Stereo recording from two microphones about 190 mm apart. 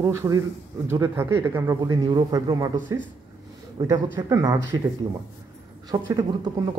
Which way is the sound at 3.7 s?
20° right (ahead or behind).